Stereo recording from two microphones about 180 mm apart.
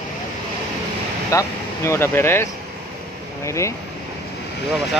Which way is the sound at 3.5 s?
15° left (ahead or behind).